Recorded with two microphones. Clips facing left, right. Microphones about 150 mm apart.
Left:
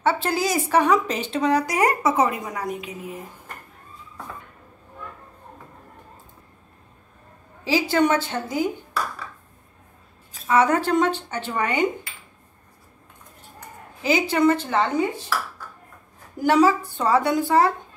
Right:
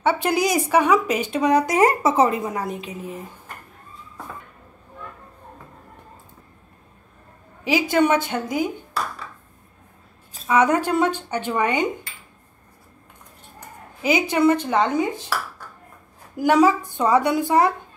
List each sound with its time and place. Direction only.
0.0 s speech: 15° right (ahead or behind)
7.6 s speech: 15° right (ahead or behind)
10.5 s speech: 15° right (ahead or behind)
14.0 s speech: 15° right (ahead or behind)
16.3 s speech: 15° right (ahead or behind)